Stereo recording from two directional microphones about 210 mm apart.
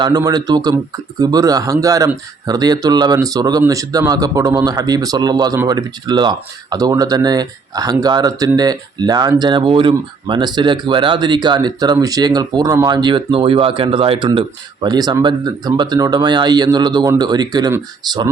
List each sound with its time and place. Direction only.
0.0 s speech: 20° right (ahead or behind)